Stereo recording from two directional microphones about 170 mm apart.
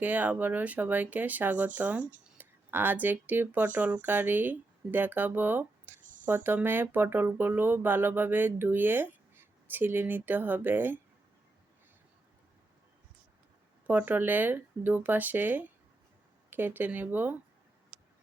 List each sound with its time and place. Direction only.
0.0 s speech: 10° right (ahead or behind)
6.0 s a sound: 50° right (ahead or behind)
6.2 s speech: 10° right (ahead or behind)
13.8 s speech: 10° right (ahead or behind)